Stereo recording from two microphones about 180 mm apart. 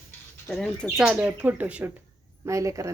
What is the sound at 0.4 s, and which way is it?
Speech, 5° left (ahead or behind).